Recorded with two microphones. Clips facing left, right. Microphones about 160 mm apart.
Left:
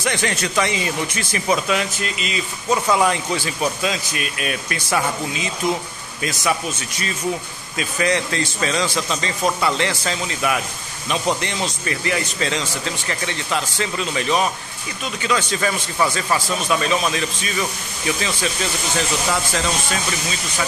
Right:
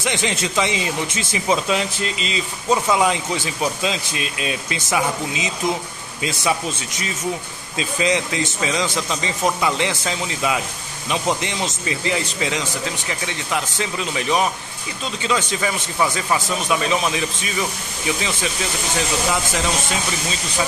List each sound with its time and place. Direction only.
0.0 s speech: 20° right (ahead or behind)
2.7 s speech: 15° right (ahead or behind)
7.7 s speech: 20° right (ahead or behind)